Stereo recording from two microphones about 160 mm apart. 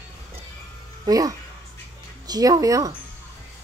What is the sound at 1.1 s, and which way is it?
Speech, 20° right (ahead or behind).